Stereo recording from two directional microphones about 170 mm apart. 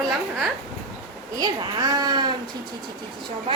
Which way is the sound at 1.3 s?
20° right (ahead or behind).